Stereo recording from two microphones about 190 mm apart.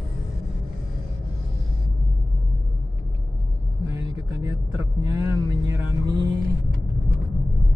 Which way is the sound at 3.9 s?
15° right (ahead or behind).